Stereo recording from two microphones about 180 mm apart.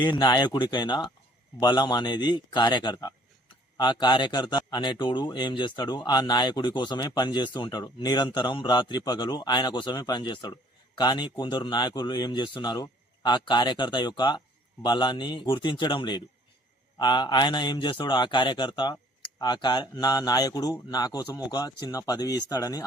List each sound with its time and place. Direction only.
0.0 s a man's voice: 25° left (ahead or behind)